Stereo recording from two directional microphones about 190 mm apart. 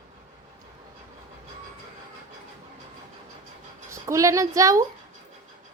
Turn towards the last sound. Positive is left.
turn(degrees=-15)  # may be behind; listen again after turning